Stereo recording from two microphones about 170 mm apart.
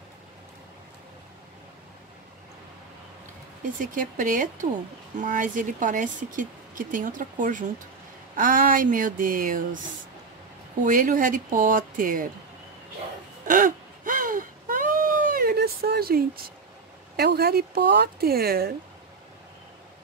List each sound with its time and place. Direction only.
3.8 s speech: 50° right (ahead or behind)
10.8 s speech: 55° right (ahead or behind)
13.5 s a sound: 55° right (ahead or behind)
17.2 s speech: 65° right (ahead or behind)